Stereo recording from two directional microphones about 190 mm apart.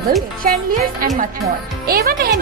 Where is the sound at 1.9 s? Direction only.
55° right (ahead or behind).